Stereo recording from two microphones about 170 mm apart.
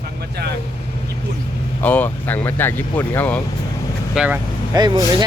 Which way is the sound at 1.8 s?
10° left (ahead or behind).